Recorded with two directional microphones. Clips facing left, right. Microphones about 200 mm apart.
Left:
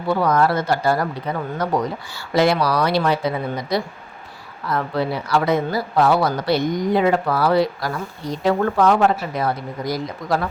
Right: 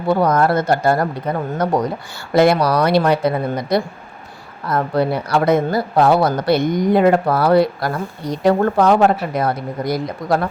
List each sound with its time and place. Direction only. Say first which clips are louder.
0.1 s speech: right 3 dB; 45° right (ahead or behind)
2.3 s speech: right 4 dB; 50° right (ahead or behind)
8.4 s speech: right 3 dB; 45° right (ahead or behind)